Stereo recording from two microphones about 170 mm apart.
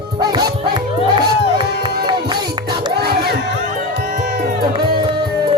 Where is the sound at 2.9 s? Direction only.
70° right (ahead or behind).